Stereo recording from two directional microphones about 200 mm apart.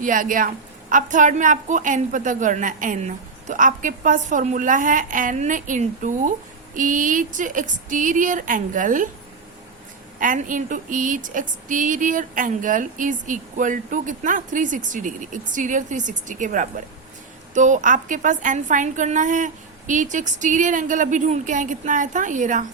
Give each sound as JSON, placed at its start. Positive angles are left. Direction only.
{"t": 0.0, "sound": "speech", "side_deg": -40}
{"t": 10.2, "sound": "speech", "side_deg": -40}